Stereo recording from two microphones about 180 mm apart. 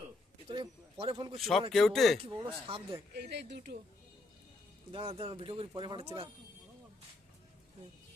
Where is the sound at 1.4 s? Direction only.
Centre (ahead or behind).